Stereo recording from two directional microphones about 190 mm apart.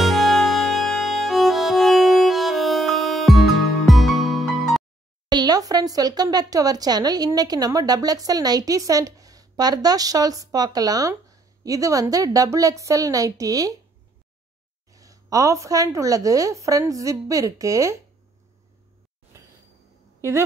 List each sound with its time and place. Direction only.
0.0 s music: centre (ahead or behind)
5.3 s speech: 20° right (ahead or behind)
14.9 s speech: 15° right (ahead or behind)
19.3 s a sound: 15° right (ahead or behind)